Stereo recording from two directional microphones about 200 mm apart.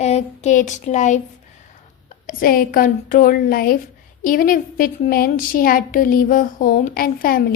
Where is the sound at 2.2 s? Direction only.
45° left (ahead or behind).